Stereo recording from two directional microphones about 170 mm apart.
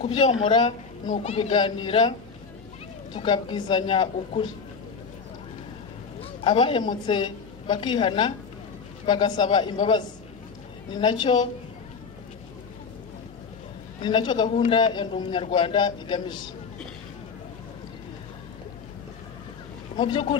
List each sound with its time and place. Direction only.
0.0 s a woman's voice: 30° left (ahead or behind)
6.4 s a woman's voice: 30° left (ahead or behind)
14.0 s a woman's voice: 25° left (ahead or behind)
20.0 s a woman's voice: 30° left (ahead or behind)